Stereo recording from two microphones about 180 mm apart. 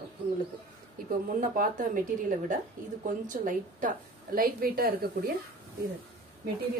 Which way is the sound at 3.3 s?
50° right (ahead or behind).